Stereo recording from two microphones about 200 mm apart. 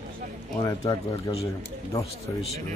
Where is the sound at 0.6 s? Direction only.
20° left (ahead or behind).